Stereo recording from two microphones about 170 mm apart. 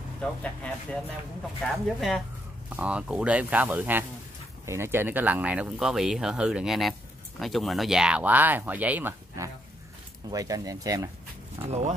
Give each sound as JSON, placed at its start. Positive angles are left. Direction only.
{"t": 0.2, "sound": "speech", "side_deg": 5}
{"t": 11.6, "sound": "speech", "side_deg": -40}